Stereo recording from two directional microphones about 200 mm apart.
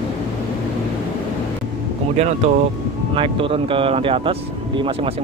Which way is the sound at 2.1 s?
35° right (ahead or behind).